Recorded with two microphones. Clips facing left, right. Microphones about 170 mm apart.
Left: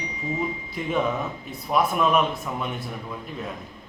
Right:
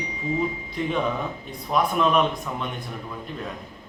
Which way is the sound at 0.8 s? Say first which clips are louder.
Even; 5° left (ahead or behind).